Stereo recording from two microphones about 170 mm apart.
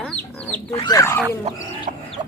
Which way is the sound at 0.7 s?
25° left (ahead or behind).